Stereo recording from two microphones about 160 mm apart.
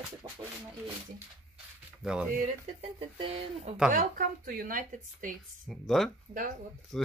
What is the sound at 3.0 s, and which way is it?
Speech, 35° right (ahead or behind).